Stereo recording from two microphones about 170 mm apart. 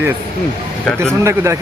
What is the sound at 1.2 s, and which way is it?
Speech, 15° right (ahead or behind).